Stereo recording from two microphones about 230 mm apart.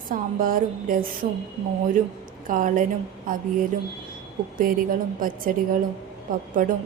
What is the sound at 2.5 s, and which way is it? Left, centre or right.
Speech, right.